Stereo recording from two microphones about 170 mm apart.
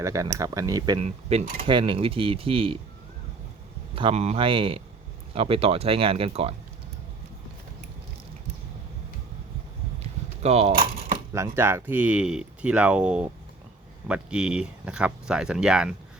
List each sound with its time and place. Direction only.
0.0 s speech: 20° right (ahead or behind)
0.9 s speech: 35° right (ahead or behind)
3.9 s speech: 35° right (ahead or behind)
10.0 s a sound: 40° right (ahead or behind)
11.3 s speech: 15° right (ahead or behind)